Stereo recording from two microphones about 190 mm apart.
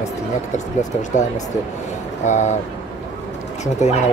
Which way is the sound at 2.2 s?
40° left (ahead or behind).